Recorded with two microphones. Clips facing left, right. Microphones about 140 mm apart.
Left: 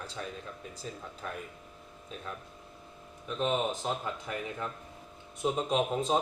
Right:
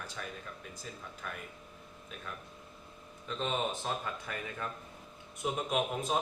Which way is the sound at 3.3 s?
15° left (ahead or behind).